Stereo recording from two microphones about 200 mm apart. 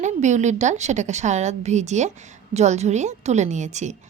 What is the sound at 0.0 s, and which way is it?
A woman's voice, 35° right (ahead or behind).